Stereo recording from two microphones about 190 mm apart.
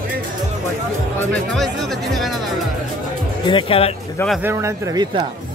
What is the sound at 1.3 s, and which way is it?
Speech, centre (ahead or behind).